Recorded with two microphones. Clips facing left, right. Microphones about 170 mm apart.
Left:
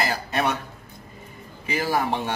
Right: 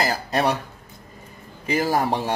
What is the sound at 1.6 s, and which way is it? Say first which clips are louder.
Speech: right 3 dB; 40° right (ahead or behind).